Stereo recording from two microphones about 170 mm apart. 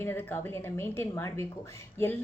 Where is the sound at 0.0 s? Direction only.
10° left (ahead or behind).